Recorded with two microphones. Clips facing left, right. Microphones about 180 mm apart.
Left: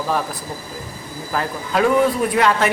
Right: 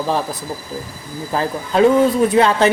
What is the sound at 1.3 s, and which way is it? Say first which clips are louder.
Speech: right 3 dB; 25° right (ahead or behind).